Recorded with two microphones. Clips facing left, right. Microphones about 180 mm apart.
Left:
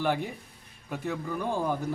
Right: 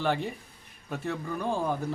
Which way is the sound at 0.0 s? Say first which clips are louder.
Even; 10° left (ahead or behind).